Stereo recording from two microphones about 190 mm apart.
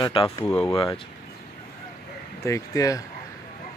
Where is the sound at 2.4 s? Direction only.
15° left (ahead or behind).